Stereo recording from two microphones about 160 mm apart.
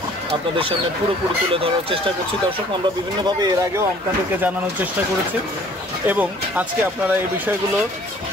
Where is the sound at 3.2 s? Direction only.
20° right (ahead or behind).